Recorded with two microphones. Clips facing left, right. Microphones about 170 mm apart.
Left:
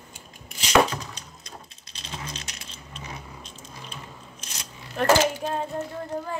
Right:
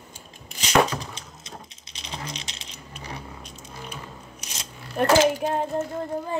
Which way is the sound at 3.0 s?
35° right (ahead or behind).